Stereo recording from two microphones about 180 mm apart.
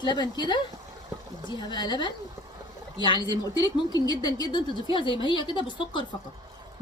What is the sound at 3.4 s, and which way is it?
Speech, 20° left (ahead or behind).